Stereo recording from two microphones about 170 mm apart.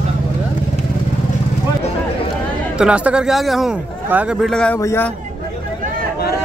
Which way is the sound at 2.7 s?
5° right (ahead or behind).